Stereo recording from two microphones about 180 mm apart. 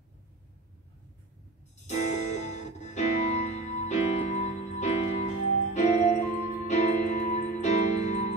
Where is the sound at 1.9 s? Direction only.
40° left (ahead or behind).